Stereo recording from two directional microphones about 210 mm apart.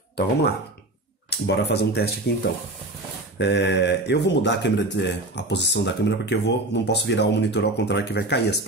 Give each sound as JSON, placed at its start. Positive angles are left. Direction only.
{"t": 1.3, "sound": "speech", "side_deg": 50}
{"t": 3.3, "sound": "speech", "side_deg": 55}